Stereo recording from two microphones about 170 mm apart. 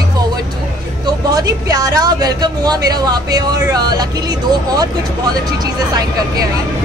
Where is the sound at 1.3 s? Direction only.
20° right (ahead or behind).